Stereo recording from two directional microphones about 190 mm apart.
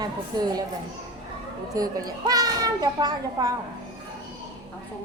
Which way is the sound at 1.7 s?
20° right (ahead or behind).